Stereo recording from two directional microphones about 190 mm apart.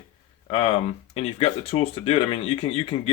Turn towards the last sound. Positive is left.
turn(degrees=30)  # may be behind; listen again after turning